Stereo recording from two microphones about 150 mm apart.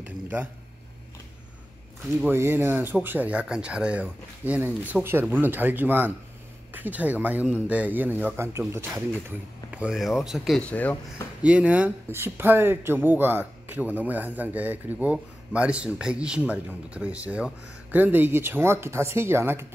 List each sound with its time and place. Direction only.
0.0 s speech: 10° right (ahead or behind)
2.2 s speech: 15° right (ahead or behind)
10.6 s speech: 10° left (ahead or behind)
11.4 s speech: 10° right (ahead or behind)